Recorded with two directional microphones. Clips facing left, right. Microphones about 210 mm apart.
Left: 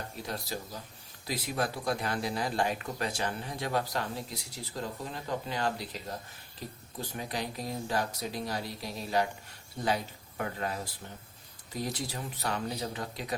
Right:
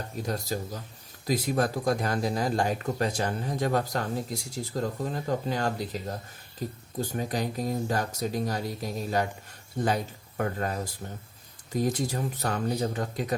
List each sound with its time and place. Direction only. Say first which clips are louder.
0.3 s speech: right 7 dB; 45° right (ahead or behind)